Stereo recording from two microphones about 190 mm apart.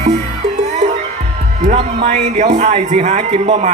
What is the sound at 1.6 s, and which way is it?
Music, 35° right (ahead or behind).